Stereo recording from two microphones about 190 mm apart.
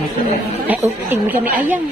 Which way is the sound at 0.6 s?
10° right (ahead or behind).